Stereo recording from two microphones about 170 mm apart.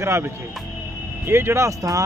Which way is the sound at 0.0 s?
15° right (ahead or behind).